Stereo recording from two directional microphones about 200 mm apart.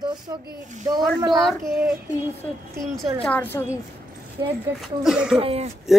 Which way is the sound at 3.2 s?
10° left (ahead or behind).